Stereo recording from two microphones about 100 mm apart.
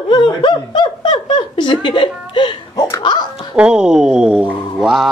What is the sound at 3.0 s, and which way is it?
Music, 50° left (ahead or behind).